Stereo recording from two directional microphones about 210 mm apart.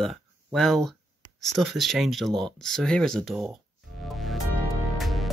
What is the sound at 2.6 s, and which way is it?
Music, centre (ahead or behind).